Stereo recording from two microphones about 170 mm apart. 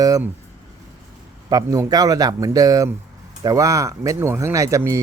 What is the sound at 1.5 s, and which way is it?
Speech, 20° right (ahead or behind).